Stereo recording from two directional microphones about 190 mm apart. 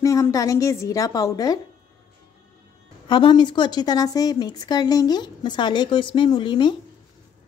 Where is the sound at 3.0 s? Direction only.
25° left (ahead or behind).